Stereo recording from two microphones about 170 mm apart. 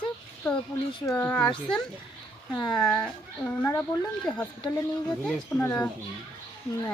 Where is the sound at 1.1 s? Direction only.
10° left (ahead or behind).